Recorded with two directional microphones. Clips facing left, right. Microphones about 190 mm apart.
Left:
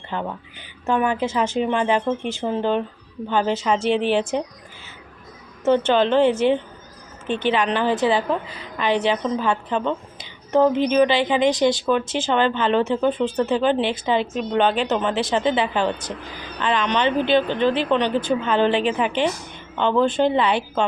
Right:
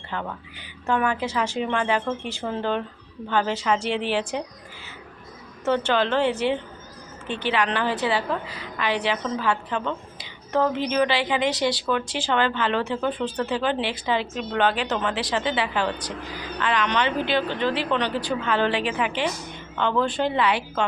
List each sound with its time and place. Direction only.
0.1 s speech: 20° left (ahead or behind)
5.6 s speech: 20° left (ahead or behind)
7.4 s a woman's voice: 20° left (ahead or behind)